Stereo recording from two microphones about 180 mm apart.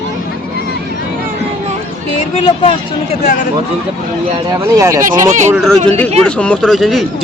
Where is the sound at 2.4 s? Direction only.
25° left (ahead or behind).